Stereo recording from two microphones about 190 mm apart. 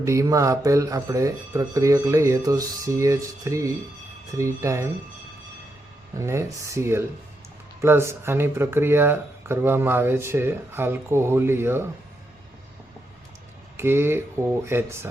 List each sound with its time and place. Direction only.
0.0 s speech: 15° right (ahead or behind)
6.1 s speech: 15° right (ahead or behind)
13.7 s speech: 10° right (ahead or behind)